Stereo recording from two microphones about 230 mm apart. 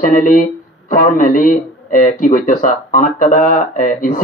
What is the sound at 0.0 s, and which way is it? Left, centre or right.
Speech, left.